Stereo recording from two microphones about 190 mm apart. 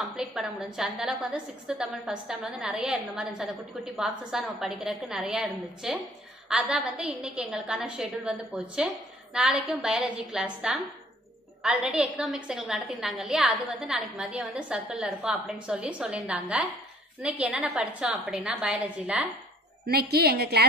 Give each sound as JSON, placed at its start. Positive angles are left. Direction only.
{"t": 0.1, "sound": "a woman's voice", "side_deg": 0}
{"t": 19.9, "sound": "a woman's voice", "side_deg": -55}